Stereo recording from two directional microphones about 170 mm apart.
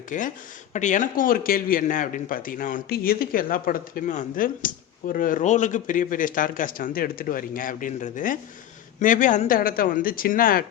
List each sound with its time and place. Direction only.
0.1 s speech: 50° left (ahead or behind)